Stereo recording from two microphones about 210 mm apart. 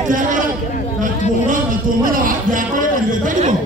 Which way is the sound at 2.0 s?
40° right (ahead or behind).